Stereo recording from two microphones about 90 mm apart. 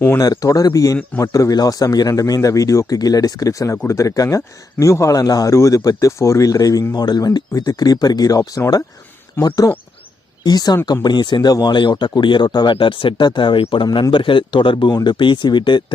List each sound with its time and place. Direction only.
0.2 s a man's voice: 45° left (ahead or behind)
10.4 s speech: 45° left (ahead or behind); by 13.8 s 80° left
14.1 s speech: 65° left (ahead or behind)